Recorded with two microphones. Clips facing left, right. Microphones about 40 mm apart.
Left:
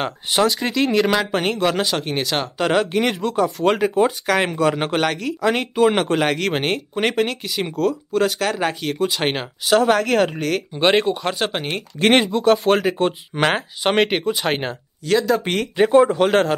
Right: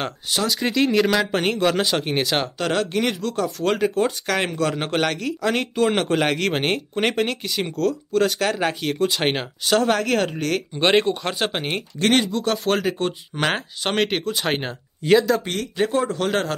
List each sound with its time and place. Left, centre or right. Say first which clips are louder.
0.5 s speech: left 1 dB; centre
2.6 s speech: left 6 dB; centre
12.0 s speech: left 4 dB; left
12.4 s speech: left 6 dB; centre
15.7 s speech: left 8 dB; centre